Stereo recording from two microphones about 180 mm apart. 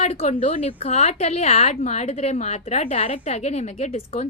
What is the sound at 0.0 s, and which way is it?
A woman's voice, 40° left (ahead or behind).